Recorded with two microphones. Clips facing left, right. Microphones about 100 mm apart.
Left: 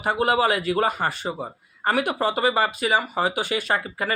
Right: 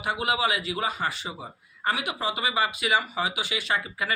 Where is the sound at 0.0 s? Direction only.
45° left (ahead or behind).